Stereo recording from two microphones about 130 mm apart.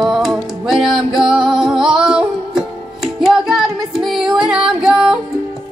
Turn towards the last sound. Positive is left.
turn(degrees=-5)  # may be behind; listen again after turning